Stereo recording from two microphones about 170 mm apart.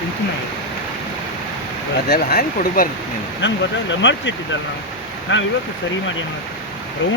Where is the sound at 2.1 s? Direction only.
65° left (ahead or behind).